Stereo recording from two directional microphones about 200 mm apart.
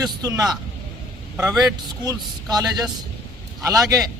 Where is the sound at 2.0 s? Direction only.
20° right (ahead or behind).